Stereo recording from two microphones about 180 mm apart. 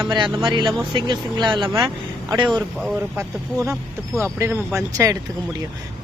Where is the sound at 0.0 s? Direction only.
20° right (ahead or behind).